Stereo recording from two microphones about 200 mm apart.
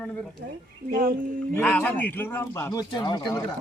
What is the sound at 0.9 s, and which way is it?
Speech, 45° right (ahead or behind).